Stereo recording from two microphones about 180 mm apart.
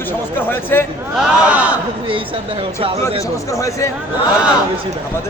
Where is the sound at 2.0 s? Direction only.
30° right (ahead or behind).